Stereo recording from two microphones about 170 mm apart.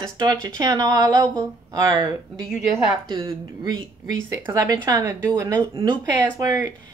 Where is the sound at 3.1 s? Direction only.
25° right (ahead or behind).